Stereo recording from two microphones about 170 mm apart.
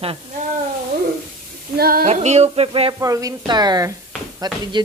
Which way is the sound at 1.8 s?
60° right (ahead or behind).